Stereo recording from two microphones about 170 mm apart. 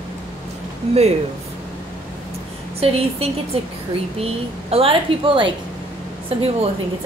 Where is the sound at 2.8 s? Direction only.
35° right (ahead or behind).